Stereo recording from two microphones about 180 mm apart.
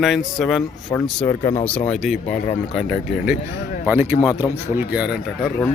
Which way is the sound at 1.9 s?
Centre (ahead or behind).